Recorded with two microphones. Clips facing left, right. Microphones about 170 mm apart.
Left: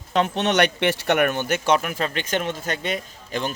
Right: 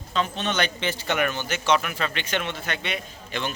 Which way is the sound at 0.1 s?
65° left (ahead or behind).